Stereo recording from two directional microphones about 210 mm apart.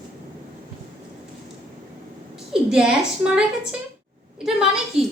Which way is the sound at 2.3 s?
5° right (ahead or behind).